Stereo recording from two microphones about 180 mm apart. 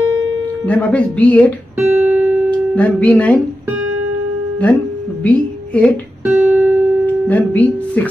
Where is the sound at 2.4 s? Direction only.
5° left (ahead or behind).